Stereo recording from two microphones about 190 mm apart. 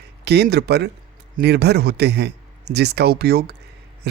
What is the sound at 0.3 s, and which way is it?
A man's voice, 60° right (ahead or behind).